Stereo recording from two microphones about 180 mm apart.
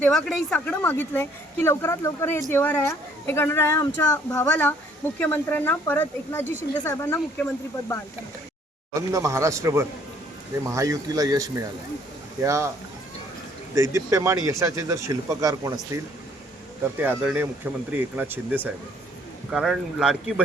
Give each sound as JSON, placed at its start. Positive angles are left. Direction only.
{"t": 0.0, "sound": "a woman's voice", "side_deg": 0}
{"t": 8.9, "sound": "speech", "side_deg": -15}
{"t": 13.7, "sound": "speech", "side_deg": -15}
{"t": 17.0, "sound": "speech", "side_deg": -10}